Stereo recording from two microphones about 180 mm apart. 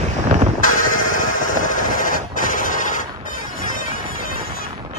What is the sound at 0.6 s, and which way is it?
Music, 50° left (ahead or behind).